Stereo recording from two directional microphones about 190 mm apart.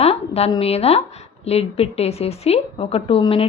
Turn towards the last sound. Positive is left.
turn(degrees=30)  # may be behind; listen again after turning